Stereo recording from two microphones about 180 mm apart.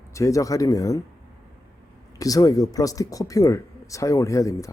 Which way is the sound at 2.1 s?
20° left (ahead or behind).